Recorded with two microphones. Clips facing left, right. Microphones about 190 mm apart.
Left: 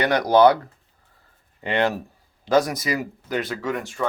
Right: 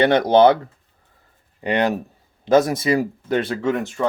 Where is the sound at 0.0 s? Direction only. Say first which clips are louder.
Right 3 dB; 25° right (ahead or behind).